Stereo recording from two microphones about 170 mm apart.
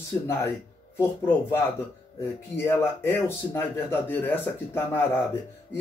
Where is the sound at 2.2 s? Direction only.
15° left (ahead or behind).